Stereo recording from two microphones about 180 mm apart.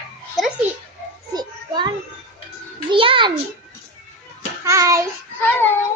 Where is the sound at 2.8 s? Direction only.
30° right (ahead or behind).